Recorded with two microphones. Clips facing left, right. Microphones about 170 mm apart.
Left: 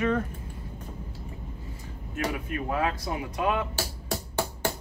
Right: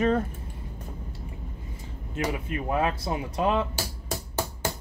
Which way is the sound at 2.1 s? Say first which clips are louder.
Right 1 dB; 25° right (ahead or behind).